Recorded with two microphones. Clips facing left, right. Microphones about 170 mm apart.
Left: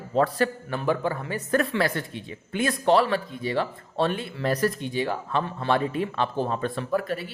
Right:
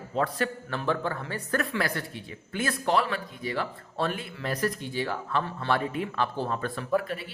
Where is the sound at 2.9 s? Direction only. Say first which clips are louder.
Left 5 dB; 30° left (ahead or behind).